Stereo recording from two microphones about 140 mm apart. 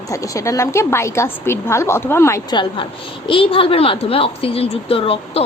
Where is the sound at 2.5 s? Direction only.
35° left (ahead or behind).